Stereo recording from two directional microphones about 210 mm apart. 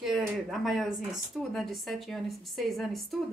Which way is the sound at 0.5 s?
Centre (ahead or behind).